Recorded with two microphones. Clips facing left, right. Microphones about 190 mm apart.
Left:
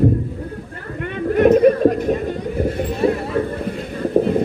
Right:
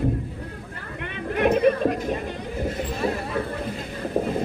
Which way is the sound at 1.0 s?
45° left (ahead or behind).